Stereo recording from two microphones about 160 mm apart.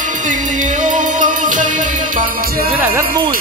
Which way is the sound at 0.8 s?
55° right (ahead or behind).